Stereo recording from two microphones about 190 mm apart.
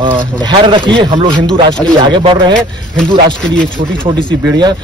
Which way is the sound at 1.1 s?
35° right (ahead or behind).